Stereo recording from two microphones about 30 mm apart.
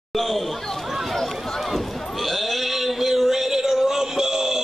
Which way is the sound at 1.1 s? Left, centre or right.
Centre.